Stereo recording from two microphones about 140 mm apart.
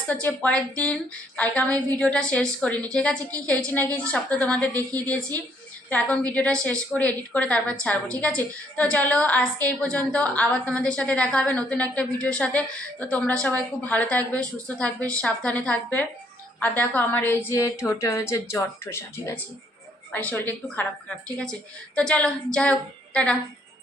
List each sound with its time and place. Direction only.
0.1 s a woman's voice: 10° left (ahead or behind)
21.9 s a woman's voice: 5° left (ahead or behind)